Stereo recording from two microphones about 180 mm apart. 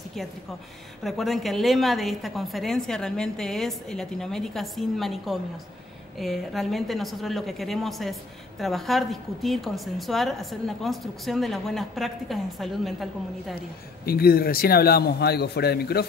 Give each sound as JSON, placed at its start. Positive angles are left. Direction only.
{"t": 1.0, "sound": "a woman's voice", "side_deg": 0}
{"t": 14.0, "sound": "a man's voice", "side_deg": 60}